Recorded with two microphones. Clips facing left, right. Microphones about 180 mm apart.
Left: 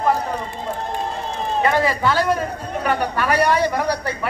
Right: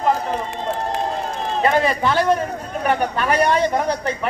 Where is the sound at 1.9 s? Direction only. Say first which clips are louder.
Right 1 dB; 20° right (ahead or behind).